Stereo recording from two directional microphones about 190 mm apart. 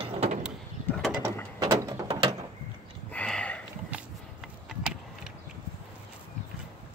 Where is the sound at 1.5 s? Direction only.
20° right (ahead or behind).